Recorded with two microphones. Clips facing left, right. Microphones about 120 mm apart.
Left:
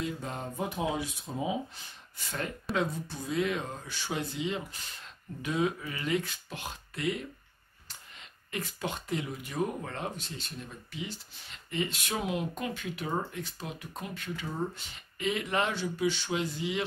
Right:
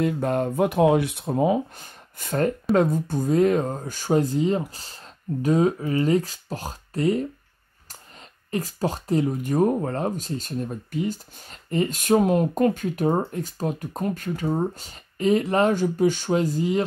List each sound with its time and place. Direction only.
0.0 s speech: 60° right (ahead or behind); by 7.2 s 40° right (ahead or behind)
8.5 s speech: 35° right (ahead or behind)